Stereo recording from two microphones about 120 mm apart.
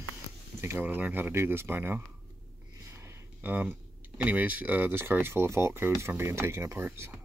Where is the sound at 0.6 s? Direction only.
15° right (ahead or behind).